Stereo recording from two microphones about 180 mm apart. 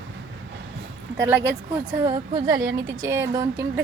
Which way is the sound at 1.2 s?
10° right (ahead or behind).